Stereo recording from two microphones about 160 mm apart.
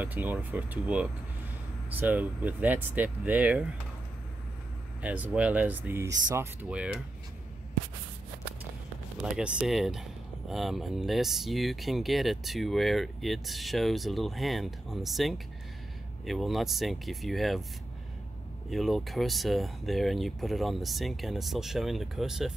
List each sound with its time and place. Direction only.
0.0 s speech: 10° right (ahead or behind)
5.0 s speech: 10° right (ahead or behind)
9.2 s speech: 5° right (ahead or behind)
18.7 s speech: centre (ahead or behind)